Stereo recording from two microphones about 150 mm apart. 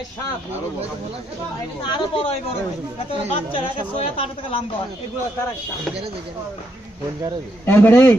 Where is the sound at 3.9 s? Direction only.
40° left (ahead or behind).